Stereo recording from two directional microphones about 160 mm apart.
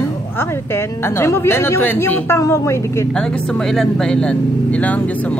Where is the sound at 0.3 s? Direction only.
15° left (ahead or behind).